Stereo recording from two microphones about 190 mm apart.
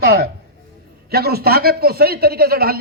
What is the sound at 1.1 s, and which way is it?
A man's voice, 55° right (ahead or behind).